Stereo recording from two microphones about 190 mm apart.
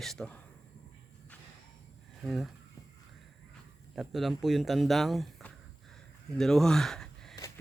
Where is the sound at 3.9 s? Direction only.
Centre (ahead or behind).